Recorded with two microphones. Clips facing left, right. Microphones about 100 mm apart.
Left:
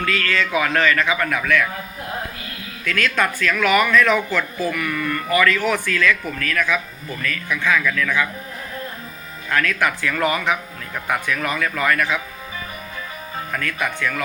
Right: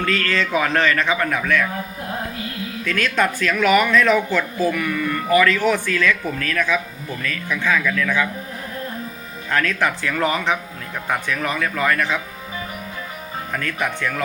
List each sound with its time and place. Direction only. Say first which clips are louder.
0.0 s speech: right 1 dB; 35° right (ahead or behind)
2.8 s speech: even; 25° right (ahead or behind)
9.5 s speech: even; 30° right (ahead or behind)
13.5 s speech: right 1 dB; 25° right (ahead or behind)